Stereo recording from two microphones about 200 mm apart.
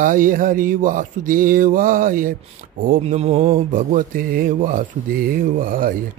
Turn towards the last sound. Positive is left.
turn(degrees=-45)  # may be behind; listen again after turning